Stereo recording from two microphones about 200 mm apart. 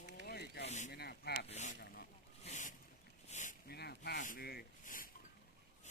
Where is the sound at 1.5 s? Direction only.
35° left (ahead or behind).